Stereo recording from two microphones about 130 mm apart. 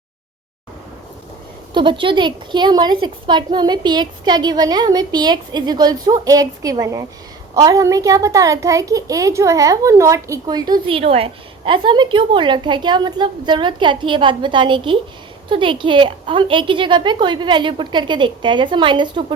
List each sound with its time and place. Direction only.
1.7 s a woman's voice: 40° right (ahead or behind)
10.9 s a woman's voice: 45° right (ahead or behind)